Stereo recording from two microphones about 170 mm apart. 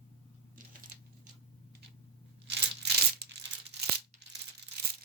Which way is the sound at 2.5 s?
75° right (ahead or behind).